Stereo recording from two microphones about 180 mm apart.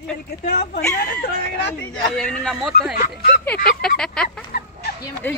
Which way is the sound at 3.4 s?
5° left (ahead or behind).